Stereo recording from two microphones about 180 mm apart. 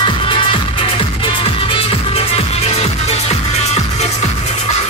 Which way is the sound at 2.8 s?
35° left (ahead or behind).